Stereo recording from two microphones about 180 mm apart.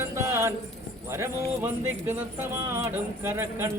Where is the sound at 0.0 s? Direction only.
15° right (ahead or behind).